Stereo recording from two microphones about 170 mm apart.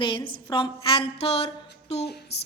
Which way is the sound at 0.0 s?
30° left (ahead or behind).